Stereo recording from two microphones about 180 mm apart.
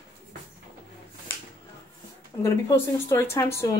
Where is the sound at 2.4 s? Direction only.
15° left (ahead or behind).